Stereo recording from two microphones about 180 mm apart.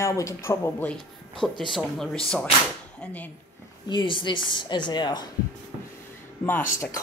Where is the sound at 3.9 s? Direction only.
25° left (ahead or behind).